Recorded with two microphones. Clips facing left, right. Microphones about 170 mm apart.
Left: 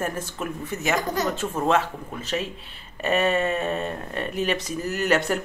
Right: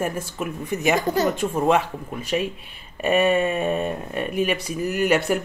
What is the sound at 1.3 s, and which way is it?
Speech, 15° right (ahead or behind).